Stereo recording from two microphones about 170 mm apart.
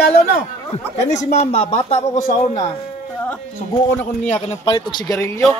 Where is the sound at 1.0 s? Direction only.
45° left (ahead or behind).